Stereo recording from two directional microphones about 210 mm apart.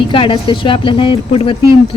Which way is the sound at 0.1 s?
25° left (ahead or behind).